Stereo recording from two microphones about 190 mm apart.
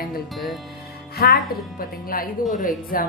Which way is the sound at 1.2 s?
55° left (ahead or behind).